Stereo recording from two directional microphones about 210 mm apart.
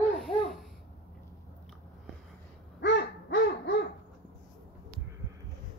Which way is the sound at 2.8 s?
55° left (ahead or behind).